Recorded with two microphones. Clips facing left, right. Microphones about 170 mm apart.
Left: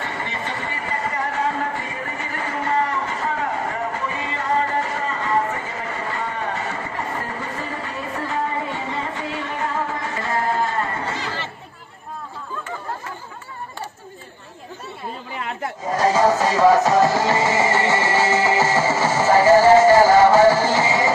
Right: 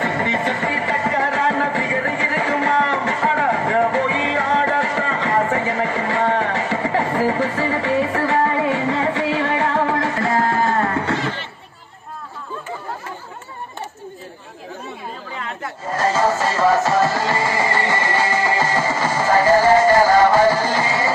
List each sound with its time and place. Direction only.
0.0 s music: 70° right (ahead or behind); by 11.1 s 90° right
15.8 s music: 15° left (ahead or behind)
18.1 s music: 15° right (ahead or behind)
19.9 s music: 10° left (ahead or behind)
20.4 s music: 15° right (ahead or behind)
20.8 s music: 15° left (ahead or behind)